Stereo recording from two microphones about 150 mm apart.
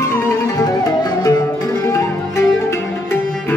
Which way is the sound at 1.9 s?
20° left (ahead or behind).